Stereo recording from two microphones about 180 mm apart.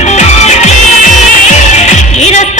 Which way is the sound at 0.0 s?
40° left (ahead or behind).